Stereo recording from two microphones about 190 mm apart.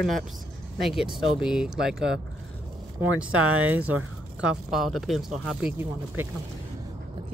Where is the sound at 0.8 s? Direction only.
Centre (ahead or behind).